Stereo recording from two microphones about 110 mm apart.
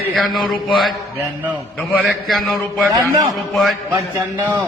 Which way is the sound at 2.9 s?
35° right (ahead or behind).